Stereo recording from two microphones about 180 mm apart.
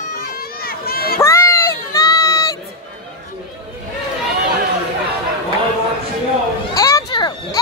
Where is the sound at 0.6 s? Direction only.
55° left (ahead or behind).